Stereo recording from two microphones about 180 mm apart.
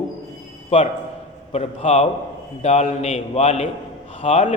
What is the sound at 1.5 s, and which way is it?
A man's voice, 35° left (ahead or behind).